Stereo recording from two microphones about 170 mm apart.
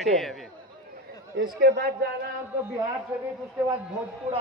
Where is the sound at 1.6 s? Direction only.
65° right (ahead or behind).